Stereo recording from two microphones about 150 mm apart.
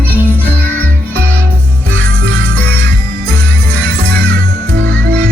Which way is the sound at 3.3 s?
15° left (ahead or behind).